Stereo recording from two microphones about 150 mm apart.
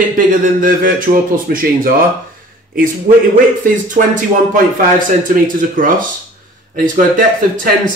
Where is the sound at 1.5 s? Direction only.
90° right.